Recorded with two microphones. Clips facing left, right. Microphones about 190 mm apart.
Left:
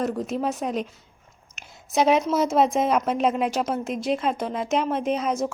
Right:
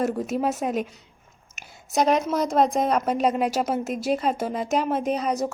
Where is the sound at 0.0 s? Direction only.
5° right (ahead or behind).